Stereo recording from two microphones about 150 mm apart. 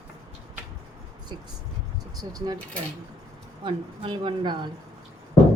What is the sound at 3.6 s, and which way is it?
Speech, 35° right (ahead or behind).